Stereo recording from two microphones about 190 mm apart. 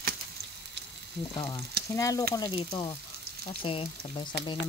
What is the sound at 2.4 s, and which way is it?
Speech, 25° left (ahead or behind).